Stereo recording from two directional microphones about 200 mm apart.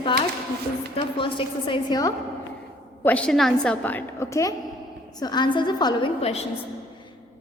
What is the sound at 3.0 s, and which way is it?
A woman's voice, 5° left (ahead or behind).